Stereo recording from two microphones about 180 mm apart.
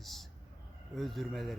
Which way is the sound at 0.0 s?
Centre (ahead or behind).